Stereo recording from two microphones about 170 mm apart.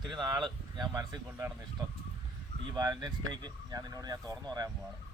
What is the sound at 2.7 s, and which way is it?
Speech, 20° right (ahead or behind).